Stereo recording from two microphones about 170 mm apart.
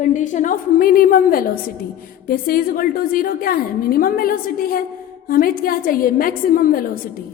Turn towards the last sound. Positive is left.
turn(degrees=60)  # may be behind; listen again after turning